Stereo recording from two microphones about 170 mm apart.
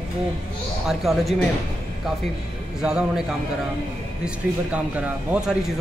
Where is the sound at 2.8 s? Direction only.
5° right (ahead or behind).